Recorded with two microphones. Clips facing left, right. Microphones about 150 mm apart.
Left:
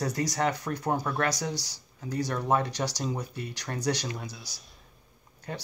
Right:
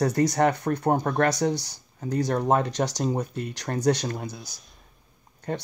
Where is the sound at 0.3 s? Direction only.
55° right (ahead or behind).